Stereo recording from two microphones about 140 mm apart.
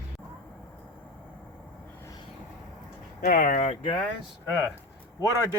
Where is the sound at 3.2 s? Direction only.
90° left.